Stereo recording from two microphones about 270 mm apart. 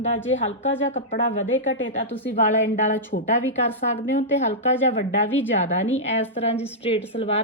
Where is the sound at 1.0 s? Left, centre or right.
Left.